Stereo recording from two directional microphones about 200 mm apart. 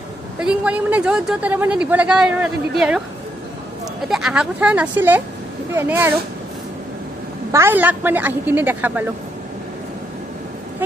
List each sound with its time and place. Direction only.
0.4 s a woman's voice: 5° right (ahead or behind)
4.1 s a woman's voice: 5° right (ahead or behind)
7.5 s a woman's voice: 10° right (ahead or behind)